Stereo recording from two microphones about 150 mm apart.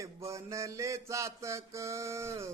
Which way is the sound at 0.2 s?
20° right (ahead or behind).